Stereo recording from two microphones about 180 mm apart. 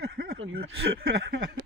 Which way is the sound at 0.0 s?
60° right (ahead or behind).